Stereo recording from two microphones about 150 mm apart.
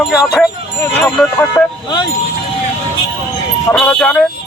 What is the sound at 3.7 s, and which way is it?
Speech, 5° left (ahead or behind).